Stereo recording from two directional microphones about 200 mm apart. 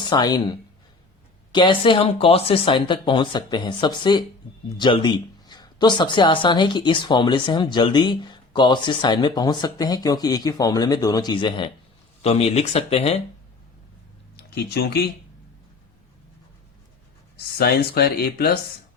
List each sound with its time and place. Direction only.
0.1 s speech: 20° left (ahead or behind)
1.5 s speech: 25° left (ahead or behind)
14.3 s speech: 55° left (ahead or behind)
17.3 s speech: 50° left (ahead or behind)